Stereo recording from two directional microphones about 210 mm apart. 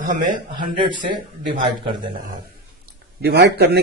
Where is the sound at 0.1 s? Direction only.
35° right (ahead or behind).